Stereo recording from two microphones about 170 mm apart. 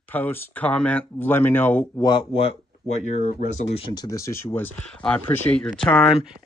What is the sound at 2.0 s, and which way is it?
Speech, 30° left (ahead or behind).